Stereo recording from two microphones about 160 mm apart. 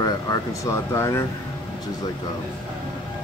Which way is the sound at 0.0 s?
20° left (ahead or behind).